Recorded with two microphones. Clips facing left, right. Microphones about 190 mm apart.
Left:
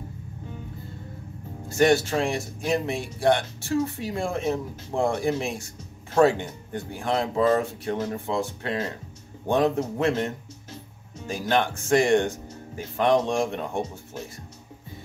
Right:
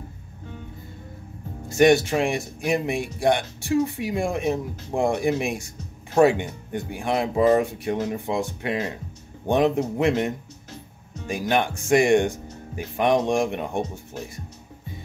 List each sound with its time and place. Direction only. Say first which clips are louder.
1.7 s speech: right 3 dB; 15° right (ahead or behind)